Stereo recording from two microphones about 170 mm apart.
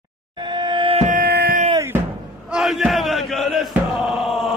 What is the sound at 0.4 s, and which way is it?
Music, 25° right (ahead or behind).